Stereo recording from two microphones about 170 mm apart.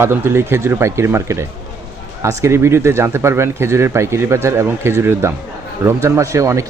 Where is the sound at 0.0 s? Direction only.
15° right (ahead or behind).